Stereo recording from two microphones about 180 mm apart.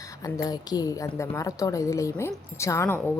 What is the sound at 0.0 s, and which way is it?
A woman's voice, 20° left (ahead or behind).